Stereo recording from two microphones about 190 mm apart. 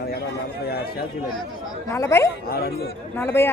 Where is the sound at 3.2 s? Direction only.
15° left (ahead or behind).